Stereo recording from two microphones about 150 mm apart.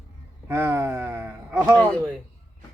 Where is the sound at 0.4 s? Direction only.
15° right (ahead or behind).